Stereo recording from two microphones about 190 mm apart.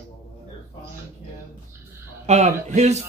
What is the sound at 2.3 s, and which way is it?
Speech, 35° right (ahead or behind).